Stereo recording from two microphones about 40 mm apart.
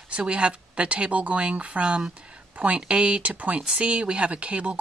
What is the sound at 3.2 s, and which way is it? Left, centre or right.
Speech, right.